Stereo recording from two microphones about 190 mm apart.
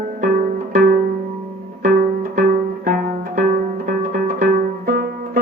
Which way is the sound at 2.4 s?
45° right (ahead or behind).